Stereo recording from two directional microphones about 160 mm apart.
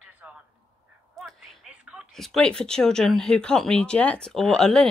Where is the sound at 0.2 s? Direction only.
5° right (ahead or behind).